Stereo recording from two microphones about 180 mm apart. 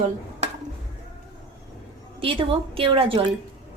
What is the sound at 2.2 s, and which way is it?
A woman's voice, 30° right (ahead or behind).